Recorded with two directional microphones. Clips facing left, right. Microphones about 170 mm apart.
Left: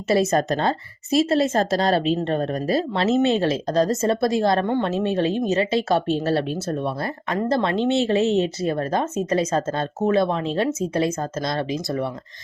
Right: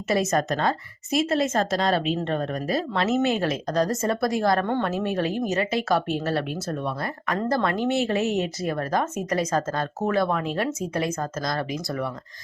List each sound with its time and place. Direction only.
0.1 s a woman's voice: 30° left (ahead or behind)